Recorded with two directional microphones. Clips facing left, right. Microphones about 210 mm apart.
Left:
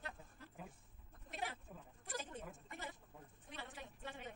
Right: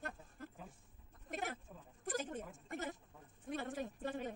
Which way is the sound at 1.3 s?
45° right (ahead or behind).